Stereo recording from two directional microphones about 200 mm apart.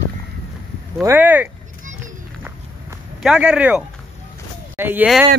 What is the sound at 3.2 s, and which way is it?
Speech, 5° right (ahead or behind).